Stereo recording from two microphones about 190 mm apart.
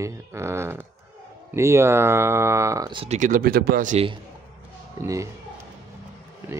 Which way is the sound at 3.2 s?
45° right (ahead or behind).